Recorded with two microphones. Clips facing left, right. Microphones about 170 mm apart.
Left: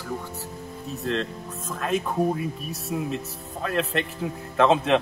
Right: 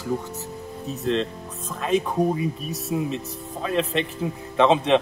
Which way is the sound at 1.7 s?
Centre (ahead or behind).